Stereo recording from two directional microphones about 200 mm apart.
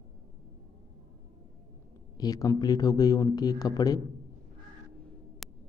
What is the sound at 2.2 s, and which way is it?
Speech, 20° left (ahead or behind).